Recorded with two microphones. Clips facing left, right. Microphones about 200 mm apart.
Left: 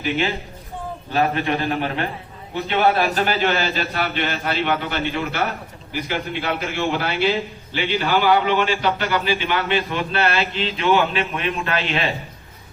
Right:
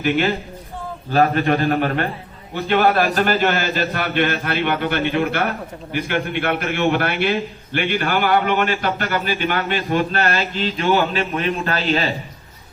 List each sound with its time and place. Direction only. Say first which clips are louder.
1.1 s a man's voice: right 4 dB; 45° right (ahead or behind)